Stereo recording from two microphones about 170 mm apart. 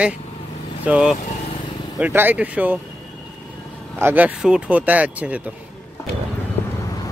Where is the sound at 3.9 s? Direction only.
10° right (ahead or behind).